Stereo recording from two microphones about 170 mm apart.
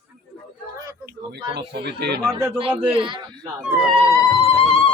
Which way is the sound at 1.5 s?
75° right (ahead or behind).